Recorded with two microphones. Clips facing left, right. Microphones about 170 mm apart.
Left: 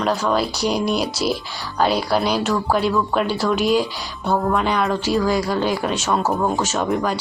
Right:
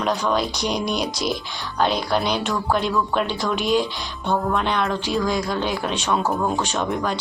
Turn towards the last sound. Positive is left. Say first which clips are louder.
# left 3 dB
turn(degrees=5)  # may be behind; listen again after turning